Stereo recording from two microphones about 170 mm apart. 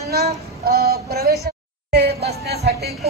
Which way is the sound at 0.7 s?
65° right (ahead or behind).